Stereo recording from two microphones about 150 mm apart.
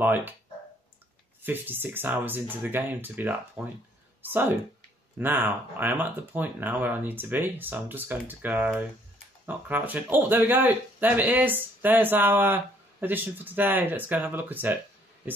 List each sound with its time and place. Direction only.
0.0 s speech: 15° right (ahead or behind)
1.4 s speech: 15° right (ahead or behind)